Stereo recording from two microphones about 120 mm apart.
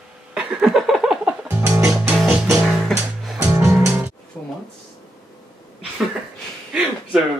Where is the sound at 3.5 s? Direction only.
25° right (ahead or behind).